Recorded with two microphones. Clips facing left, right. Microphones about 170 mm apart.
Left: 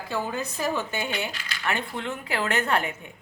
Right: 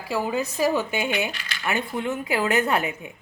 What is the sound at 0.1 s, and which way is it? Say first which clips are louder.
A woman's voice: right 5 dB; 10° right (ahead or behind).